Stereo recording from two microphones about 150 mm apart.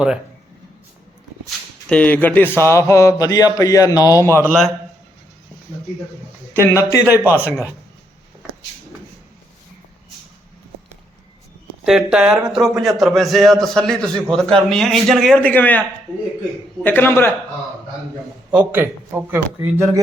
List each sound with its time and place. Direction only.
1.5 s speech: 10° left (ahead or behind)
6.5 s a man's voice: 20° left (ahead or behind)
7.0 s a man's voice: 10° right (ahead or behind)
11.8 s a man's voice: 5° right (ahead or behind); by 15.8 s 10° left (ahead or behind)
16.8 s a man's voice: 15° left (ahead or behind)
18.5 s a man's voice: 10° right (ahead or behind)